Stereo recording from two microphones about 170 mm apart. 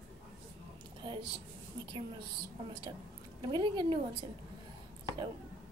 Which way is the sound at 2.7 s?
25° right (ahead or behind).